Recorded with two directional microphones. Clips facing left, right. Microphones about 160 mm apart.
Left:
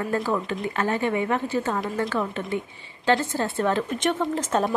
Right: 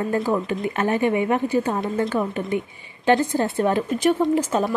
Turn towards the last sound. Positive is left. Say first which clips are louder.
# right 4 dB
turn(degrees=-5)  # may be behind; listen again after turning